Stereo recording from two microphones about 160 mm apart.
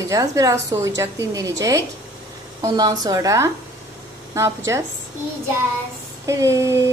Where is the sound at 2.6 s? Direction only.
25° right (ahead or behind).